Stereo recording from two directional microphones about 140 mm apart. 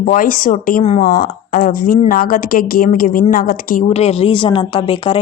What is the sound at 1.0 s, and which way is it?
A woman's voice, 90° left.